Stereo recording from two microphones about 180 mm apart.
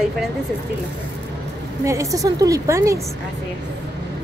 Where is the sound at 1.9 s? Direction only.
15° right (ahead or behind).